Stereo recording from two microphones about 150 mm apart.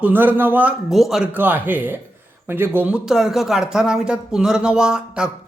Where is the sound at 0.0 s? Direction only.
10° right (ahead or behind).